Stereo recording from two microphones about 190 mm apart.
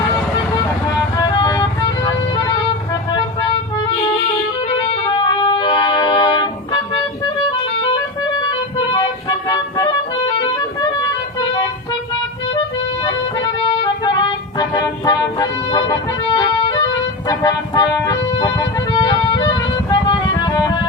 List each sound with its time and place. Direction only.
1.1 s music: 20° left (ahead or behind)
4.7 s music: 25° left (ahead or behind)
8.4 s a sound: 25° left (ahead or behind)
10.4 s music: 20° left (ahead or behind)
13.1 s music: 20° left (ahead or behind)